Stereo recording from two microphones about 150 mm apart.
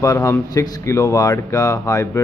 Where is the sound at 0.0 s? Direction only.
20° left (ahead or behind).